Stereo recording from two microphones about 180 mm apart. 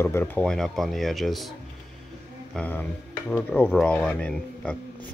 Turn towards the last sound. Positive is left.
turn(degrees=5)  # may be behind; listen again after turning